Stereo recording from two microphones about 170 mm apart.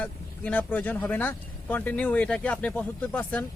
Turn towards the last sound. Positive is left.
turn(degrees=10)  # may be behind; listen again after turning